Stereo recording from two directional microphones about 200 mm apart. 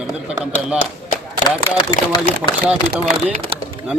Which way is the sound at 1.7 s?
25° left (ahead or behind).